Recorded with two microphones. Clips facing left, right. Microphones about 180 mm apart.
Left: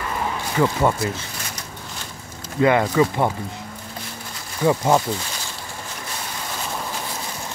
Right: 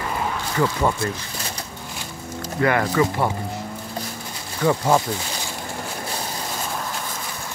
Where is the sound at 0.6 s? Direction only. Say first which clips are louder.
Left 2 dB; 20° left (ahead or behind).